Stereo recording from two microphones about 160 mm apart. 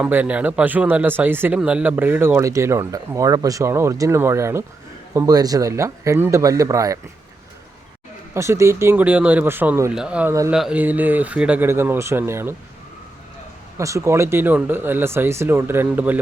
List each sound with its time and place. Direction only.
0.0 s speech: 10° right (ahead or behind)
8.3 s speech: 20° right (ahead or behind)
13.7 s speech: 20° right (ahead or behind)